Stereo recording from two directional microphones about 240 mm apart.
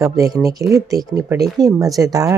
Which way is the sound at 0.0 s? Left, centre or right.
Centre.